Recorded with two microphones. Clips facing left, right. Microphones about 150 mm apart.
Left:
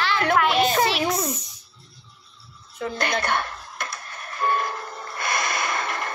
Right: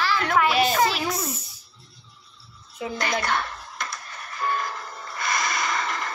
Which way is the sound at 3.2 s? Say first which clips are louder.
Left 1 dB; 55° left (ahead or behind).